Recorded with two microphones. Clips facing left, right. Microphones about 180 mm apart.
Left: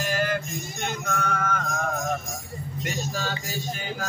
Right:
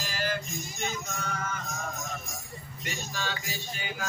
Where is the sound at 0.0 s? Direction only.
55° left (ahead or behind).